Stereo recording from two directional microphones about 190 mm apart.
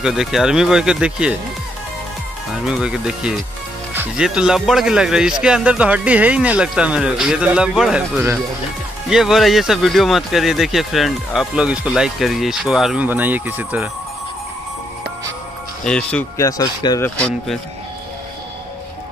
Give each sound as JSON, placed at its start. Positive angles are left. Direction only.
{"t": 0.0, "sound": "speech", "side_deg": 0}
{"t": 2.6, "sound": "speech", "side_deg": -5}
{"t": 15.8, "sound": "speech", "side_deg": 5}
{"t": 16.3, "sound": "speech", "side_deg": 20}